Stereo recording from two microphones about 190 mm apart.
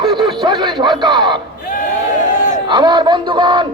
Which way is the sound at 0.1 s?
25° right (ahead or behind).